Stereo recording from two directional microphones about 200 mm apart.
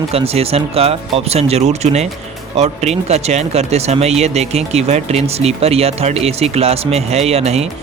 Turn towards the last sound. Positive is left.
turn(degrees=-30)  # may be behind; listen again after turning